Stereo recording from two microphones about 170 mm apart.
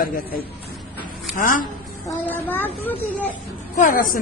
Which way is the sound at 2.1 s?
10° left (ahead or behind).